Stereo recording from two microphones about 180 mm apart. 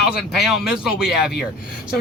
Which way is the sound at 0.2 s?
Centre (ahead or behind).